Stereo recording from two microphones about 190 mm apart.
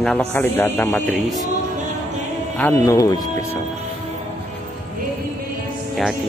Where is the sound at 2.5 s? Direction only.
10° left (ahead or behind).